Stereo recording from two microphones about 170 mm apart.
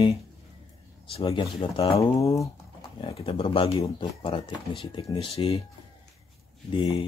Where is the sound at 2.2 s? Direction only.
20° left (ahead or behind).